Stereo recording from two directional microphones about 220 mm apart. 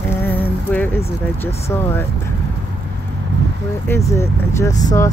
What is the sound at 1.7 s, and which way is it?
Speech, 10° left (ahead or behind).